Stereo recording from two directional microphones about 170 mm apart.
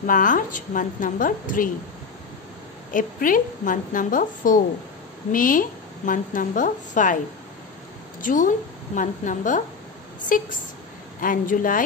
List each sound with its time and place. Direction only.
0.0 s a woman's voice: 50° left (ahead or behind)
2.9 s a woman's voice: 50° left (ahead or behind)
8.2 s a woman's voice: 50° left (ahead or behind)